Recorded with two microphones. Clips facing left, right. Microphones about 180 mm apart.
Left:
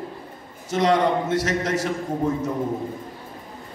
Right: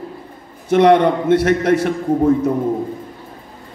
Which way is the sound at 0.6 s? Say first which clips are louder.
Right 8 dB; 60° right (ahead or behind).